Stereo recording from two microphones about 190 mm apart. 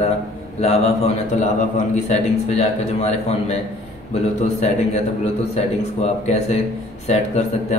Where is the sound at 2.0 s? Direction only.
35° left (ahead or behind).